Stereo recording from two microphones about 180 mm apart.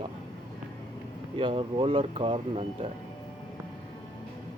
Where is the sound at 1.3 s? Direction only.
30° right (ahead or behind).